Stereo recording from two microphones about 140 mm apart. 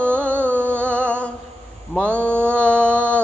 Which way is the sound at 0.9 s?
10° left (ahead or behind).